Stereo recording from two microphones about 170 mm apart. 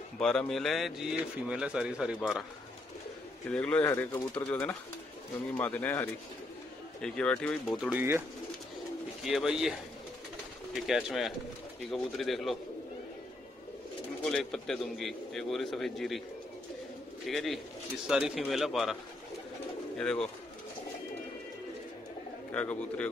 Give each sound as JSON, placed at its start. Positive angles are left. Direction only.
{"t": 0.2, "sound": "speech", "side_deg": 5}
{"t": 3.4, "sound": "speech", "side_deg": 5}
{"t": 7.8, "sound": "speech", "side_deg": -10}
{"t": 9.2, "sound": "speech", "side_deg": -5}
{"t": 14.2, "sound": "speech", "side_deg": 5}
{"t": 17.3, "sound": "speech", "side_deg": 0}
{"t": 20.0, "sound": "speech", "side_deg": 5}
{"t": 22.5, "sound": "speech", "side_deg": 10}